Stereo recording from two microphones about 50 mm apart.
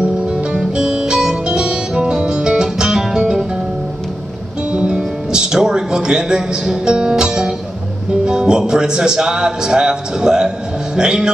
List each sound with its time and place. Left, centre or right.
0.3 s music: centre
4.6 s music: centre
8.3 s speech: centre